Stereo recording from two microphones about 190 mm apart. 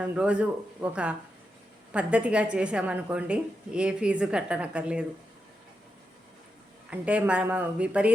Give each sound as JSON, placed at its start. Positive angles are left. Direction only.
{"t": 0.0, "sound": "a woman's voice", "side_deg": -5}
{"t": 6.9, "sound": "a woman's voice", "side_deg": -5}